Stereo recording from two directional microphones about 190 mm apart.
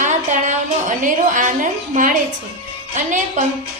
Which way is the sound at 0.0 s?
40° right (ahead or behind).